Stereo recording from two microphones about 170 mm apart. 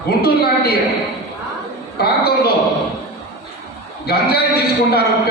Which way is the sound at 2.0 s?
65° left (ahead or behind).